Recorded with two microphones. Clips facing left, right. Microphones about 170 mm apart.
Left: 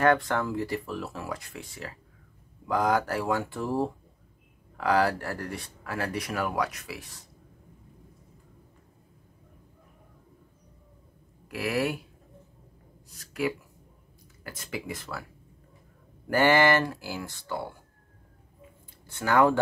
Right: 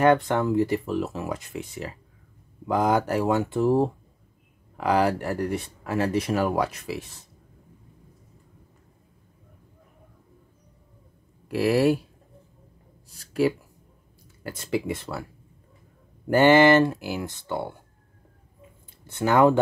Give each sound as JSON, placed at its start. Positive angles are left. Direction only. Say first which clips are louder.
{"t": 0.0, "sound": "speech", "louder": "right 4 dB", "side_deg": -20}
{"t": 11.4, "sound": "speech", "louder": "right 8 dB", "side_deg": -30}
{"t": 14.4, "sound": "speech", "louder": "right 9 dB", "side_deg": -30}
{"t": 16.3, "sound": "speech", "louder": "right 6 dB", "side_deg": -20}
{"t": 19.0, "sound": "speech", "louder": "right 4 dB", "side_deg": -20}